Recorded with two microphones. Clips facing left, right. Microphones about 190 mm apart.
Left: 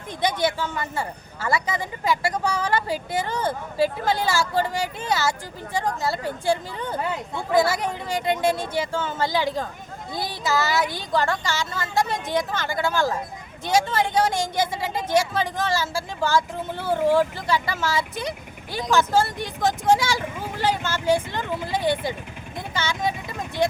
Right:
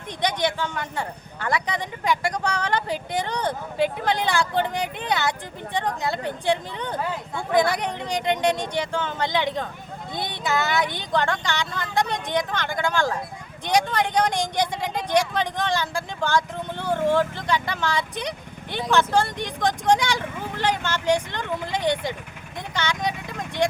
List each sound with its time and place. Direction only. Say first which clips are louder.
0.4 s speech: left 1 dB; 5° left (ahead or behind)